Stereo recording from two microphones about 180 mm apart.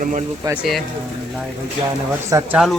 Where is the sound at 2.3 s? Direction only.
15° right (ahead or behind).